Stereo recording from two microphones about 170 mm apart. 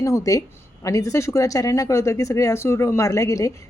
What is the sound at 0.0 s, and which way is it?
Speech, 20° left (ahead or behind).